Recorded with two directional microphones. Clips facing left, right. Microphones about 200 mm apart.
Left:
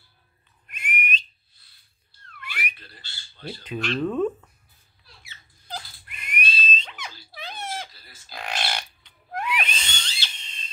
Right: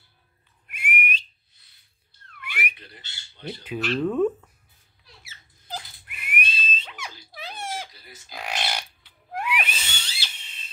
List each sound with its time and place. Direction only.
0.7 s whistle: 10° right (ahead or behind)
2.7 s squawk: 20° right (ahead or behind)
3.6 s speech: 10° right (ahead or behind)
5.2 s squeak: 5° right (ahead or behind)
5.8 s dog: 10° right (ahead or behind)
7.3 s a sound: 10° right (ahead or behind)